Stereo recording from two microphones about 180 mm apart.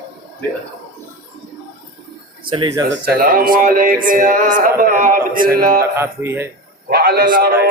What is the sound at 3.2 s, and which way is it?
Speech, 55° right (ahead or behind).